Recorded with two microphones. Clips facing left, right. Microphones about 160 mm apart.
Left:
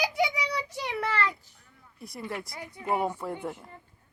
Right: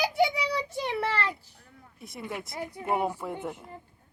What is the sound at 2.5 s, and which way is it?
Speech, 30° right (ahead or behind).